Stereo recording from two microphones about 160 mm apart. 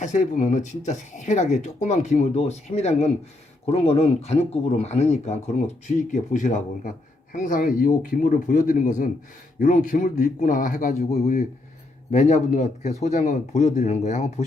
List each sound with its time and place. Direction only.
0.0 s a man's voice: 50° left (ahead or behind)
12.1 s speech: 45° left (ahead or behind)